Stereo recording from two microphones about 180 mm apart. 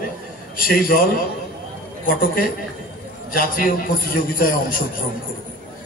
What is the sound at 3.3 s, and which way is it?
A man's voice, 50° left (ahead or behind).